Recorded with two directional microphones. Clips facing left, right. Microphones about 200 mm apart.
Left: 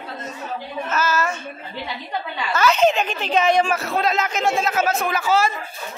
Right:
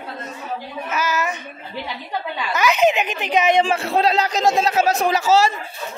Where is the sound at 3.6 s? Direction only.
30° right (ahead or behind).